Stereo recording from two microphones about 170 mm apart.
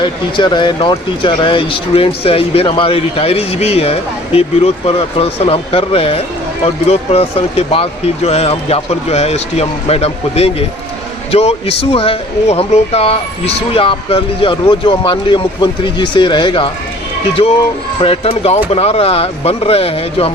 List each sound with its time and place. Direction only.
0.0 s speech: 30° left (ahead or behind)
18.0 s speech: 35° left (ahead or behind)